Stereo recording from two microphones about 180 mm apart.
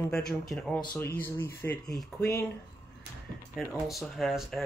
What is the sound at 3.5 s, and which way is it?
Speech, centre (ahead or behind).